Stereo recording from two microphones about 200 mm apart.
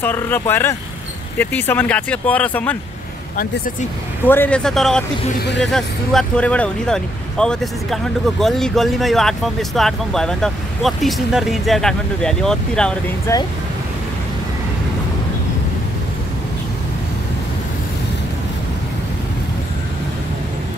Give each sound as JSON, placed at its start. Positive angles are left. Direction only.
{"t": 0.0, "sound": "speech", "side_deg": 10}
{"t": 4.2, "sound": "speech", "side_deg": 10}
{"t": 13.3, "sound": "speech", "side_deg": 15}